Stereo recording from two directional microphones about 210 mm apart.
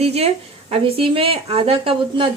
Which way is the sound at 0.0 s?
30° right (ahead or behind).